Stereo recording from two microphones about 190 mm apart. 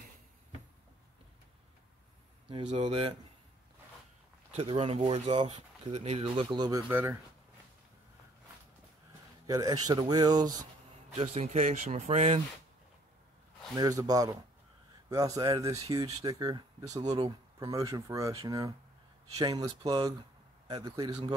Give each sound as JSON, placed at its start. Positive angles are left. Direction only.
{"t": 2.4, "sound": "speech", "side_deg": -35}
{"t": 4.5, "sound": "speech", "side_deg": -30}
{"t": 6.9, "sound": "speech", "side_deg": -10}
{"t": 9.5, "sound": "speech", "side_deg": -20}
{"t": 11.1, "sound": "speech", "side_deg": -35}
{"t": 13.7, "sound": "a man's voice", "side_deg": -20}